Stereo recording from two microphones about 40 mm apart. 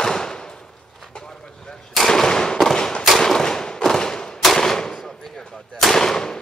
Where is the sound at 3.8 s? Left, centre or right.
Centre.